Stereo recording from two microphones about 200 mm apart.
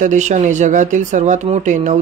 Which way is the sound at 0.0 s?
40° right (ahead or behind).